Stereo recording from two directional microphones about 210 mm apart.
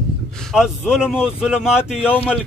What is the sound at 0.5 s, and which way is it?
A man's voice, 5° right (ahead or behind).